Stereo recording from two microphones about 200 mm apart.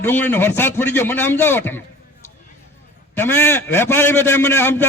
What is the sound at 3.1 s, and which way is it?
A man's voice, 10° left (ahead or behind).